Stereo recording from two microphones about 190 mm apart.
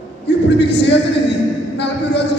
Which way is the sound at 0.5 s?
65° left (ahead or behind).